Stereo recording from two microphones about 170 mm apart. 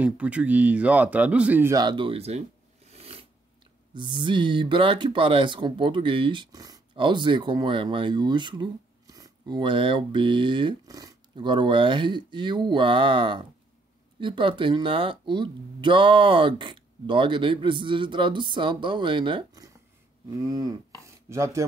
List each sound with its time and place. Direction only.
0.0 s speech: 5° right (ahead or behind); by 2.4 s 35° right (ahead or behind)
2.9 s a sound: 35° right (ahead or behind)
3.9 s speech: 30° right (ahead or behind)